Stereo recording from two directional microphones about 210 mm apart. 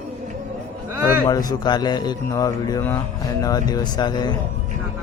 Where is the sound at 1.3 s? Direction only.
20° left (ahead or behind).